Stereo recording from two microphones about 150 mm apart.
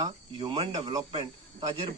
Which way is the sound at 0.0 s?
30° right (ahead or behind).